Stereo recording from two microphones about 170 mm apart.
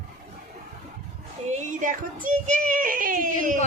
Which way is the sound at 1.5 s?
45° right (ahead or behind).